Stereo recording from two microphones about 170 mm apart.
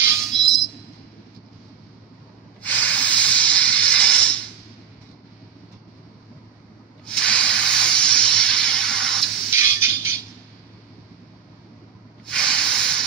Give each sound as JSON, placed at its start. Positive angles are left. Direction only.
{"t": 0.3, "sound": "a sound", "side_deg": 0}
{"t": 2.6, "sound": "hiss", "side_deg": 10}
{"t": 7.2, "sound": "hiss", "side_deg": 5}
{"t": 9.5, "sound": "music", "side_deg": -15}
{"t": 12.3, "sound": "hiss", "side_deg": 5}